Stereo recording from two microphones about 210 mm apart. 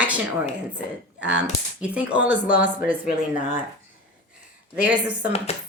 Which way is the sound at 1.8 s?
5° right (ahead or behind).